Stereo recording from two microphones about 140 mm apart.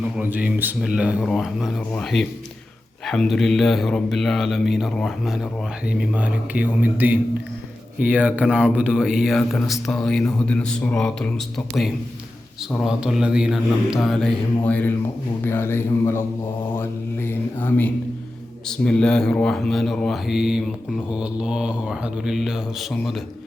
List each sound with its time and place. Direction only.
0.0 s speech: 10° right (ahead or behind)